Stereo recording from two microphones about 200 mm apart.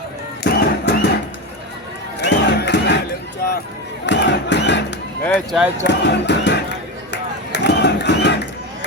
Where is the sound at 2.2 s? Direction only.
60° left (ahead or behind).